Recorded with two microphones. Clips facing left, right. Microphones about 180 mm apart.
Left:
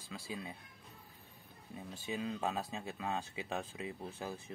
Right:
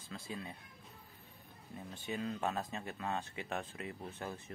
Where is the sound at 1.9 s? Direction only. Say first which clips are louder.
Even; 10° left (ahead or behind).